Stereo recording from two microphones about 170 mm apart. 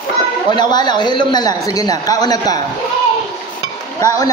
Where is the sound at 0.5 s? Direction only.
25° left (ahead or behind).